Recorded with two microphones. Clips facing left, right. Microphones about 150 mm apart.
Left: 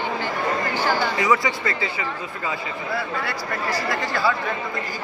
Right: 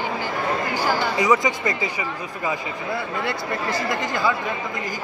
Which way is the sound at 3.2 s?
20° right (ahead or behind).